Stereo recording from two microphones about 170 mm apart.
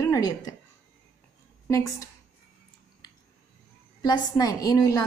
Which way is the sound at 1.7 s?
20° left (ahead or behind).